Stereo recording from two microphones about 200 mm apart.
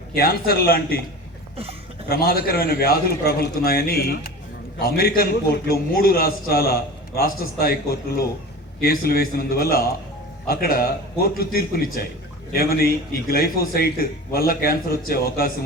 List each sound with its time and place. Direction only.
0.1 s a man's voice: 50° left (ahead or behind)
2.0 s a man's voice: 50° left (ahead or behind)